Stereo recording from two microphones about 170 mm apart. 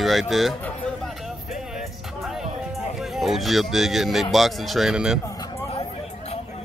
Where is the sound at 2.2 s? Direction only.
Centre (ahead or behind).